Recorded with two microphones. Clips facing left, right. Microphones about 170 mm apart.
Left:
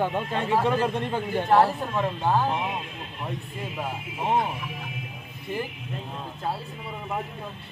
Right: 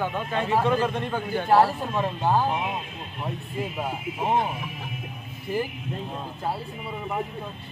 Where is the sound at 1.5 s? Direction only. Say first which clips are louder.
Right 1 dB; 5° right (ahead or behind).